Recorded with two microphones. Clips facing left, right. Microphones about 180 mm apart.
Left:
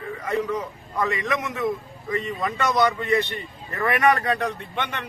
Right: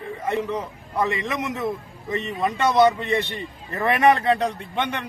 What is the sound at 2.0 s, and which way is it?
Speech, 25° right (ahead or behind).